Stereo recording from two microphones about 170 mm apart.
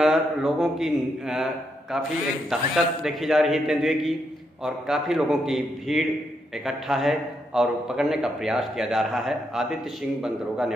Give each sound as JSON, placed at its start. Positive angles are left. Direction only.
{"t": 0.0, "sound": "a man's voice", "side_deg": 0}